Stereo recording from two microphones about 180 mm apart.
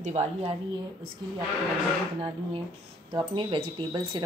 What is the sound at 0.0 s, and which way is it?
Speech, 35° right (ahead or behind).